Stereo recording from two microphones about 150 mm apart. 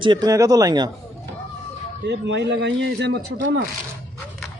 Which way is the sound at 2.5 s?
90° right.